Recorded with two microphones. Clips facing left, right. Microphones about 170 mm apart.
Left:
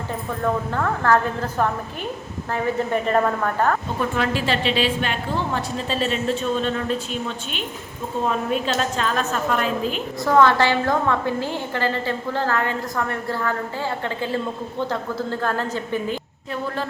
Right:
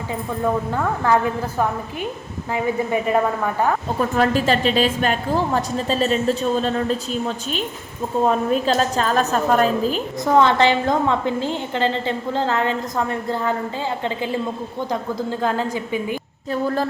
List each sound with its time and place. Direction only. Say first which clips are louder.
0.1 s a woman's voice: right 2 dB; 10° right (ahead or behind)
4.1 s a woman's voice: right 6 dB; 40° right (ahead or behind)
10.2 s a woman's voice: right 1 dB; 20° right (ahead or behind)
16.5 s a woman's voice: right 6 dB; 40° right (ahead or behind)